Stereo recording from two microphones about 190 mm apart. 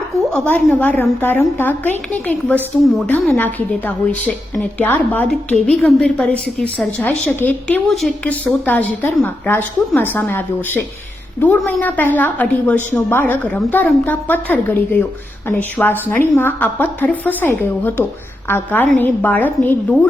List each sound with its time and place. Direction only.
0.3 s a woman's voice: 5° left (ahead or behind)